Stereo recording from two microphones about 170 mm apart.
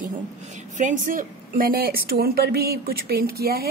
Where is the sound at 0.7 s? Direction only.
50° right (ahead or behind).